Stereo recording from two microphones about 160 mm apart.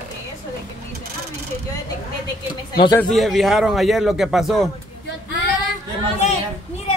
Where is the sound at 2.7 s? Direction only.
30° left (ahead or behind).